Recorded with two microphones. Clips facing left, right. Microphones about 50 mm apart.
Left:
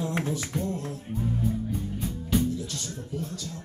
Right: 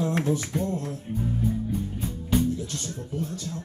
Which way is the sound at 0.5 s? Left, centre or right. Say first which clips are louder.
Right 2 dB; centre.